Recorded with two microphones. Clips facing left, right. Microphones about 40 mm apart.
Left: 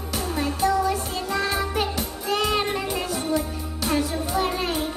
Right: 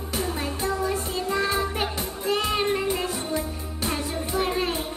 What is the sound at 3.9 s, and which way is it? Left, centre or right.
Music, right.